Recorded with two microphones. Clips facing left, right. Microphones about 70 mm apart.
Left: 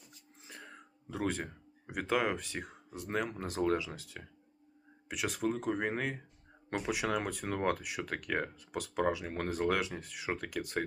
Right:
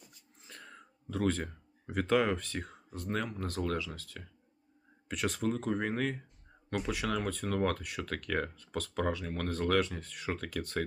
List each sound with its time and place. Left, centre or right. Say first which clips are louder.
0.4 s throat clearing: left 1 dB; centre
1.1 s speech: right 3 dB; centre
5.0 s speech: right 1 dB; centre